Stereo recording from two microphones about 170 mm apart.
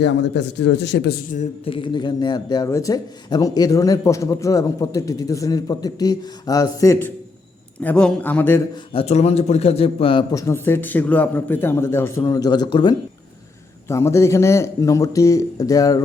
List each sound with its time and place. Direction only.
0.0 s speech: 90° left
1.6 s speech: 30° left (ahead or behind); by 8.6 s 10° left (ahead or behind)
8.9 s a man's voice: 35° left (ahead or behind)
10.3 s speech: 15° left (ahead or behind)